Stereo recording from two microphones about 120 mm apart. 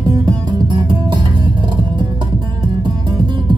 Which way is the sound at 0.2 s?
35° right (ahead or behind).